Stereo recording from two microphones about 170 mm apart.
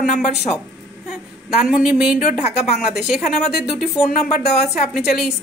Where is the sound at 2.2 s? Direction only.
40° left (ahead or behind).